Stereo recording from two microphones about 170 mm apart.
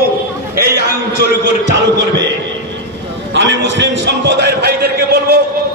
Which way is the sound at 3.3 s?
90° right.